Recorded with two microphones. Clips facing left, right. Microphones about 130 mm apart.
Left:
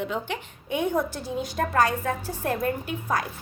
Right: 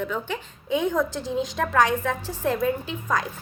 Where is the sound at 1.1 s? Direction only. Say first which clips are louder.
Right 4 dB; 20° right (ahead or behind).